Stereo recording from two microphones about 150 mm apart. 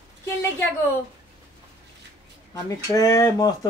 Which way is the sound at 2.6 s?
20° left (ahead or behind).